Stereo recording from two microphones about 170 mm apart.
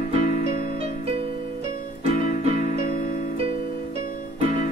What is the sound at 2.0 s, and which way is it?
Music, 35° right (ahead or behind).